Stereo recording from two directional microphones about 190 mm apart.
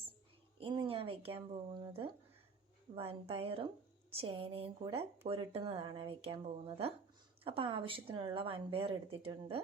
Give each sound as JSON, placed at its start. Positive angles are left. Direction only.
{"t": 0.6, "sound": "a woman's voice", "side_deg": -25}